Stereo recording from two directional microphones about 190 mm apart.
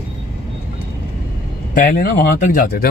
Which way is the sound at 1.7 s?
50° left (ahead or behind).